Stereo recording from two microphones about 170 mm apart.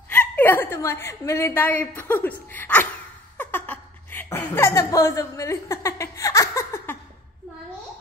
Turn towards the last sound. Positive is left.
turn(degrees=15)  # may be behind; listen again after turning